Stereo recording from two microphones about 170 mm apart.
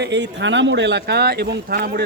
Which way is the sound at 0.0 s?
90° right.